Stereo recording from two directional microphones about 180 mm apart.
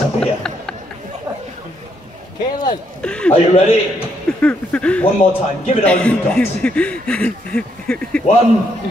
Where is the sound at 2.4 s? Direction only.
25° left (ahead or behind).